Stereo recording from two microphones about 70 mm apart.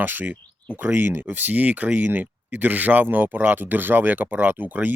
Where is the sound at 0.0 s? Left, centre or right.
Right.